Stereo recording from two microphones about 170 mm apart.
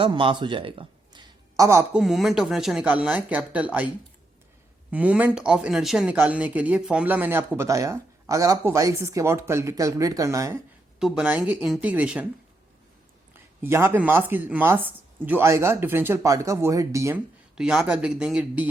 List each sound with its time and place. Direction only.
0.0 s speech: 30° right (ahead or behind)
2.0 s speech: centre (ahead or behind); by 10.6 s 20° right (ahead or behind)
11.0 s speech: 5° right (ahead or behind)
13.6 s speech: 15° right (ahead or behind)
17.5 s speech: 5° right (ahead or behind)